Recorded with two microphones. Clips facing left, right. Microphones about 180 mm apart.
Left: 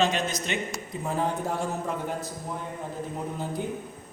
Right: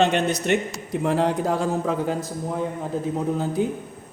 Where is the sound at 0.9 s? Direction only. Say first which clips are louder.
Right 8 dB; 90° right.